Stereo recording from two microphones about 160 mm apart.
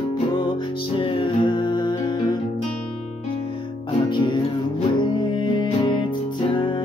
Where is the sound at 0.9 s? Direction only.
30° left (ahead or behind).